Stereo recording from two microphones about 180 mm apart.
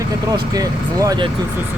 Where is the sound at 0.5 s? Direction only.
20° right (ahead or behind).